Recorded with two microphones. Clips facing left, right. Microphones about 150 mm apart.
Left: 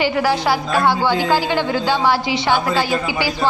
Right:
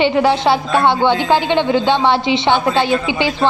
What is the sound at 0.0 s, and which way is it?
A woman's voice, 25° right (ahead or behind).